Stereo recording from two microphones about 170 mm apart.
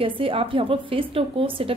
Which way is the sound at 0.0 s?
30° right (ahead or behind).